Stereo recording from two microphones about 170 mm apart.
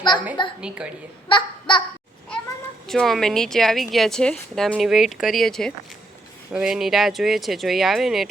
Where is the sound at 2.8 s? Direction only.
Centre (ahead or behind).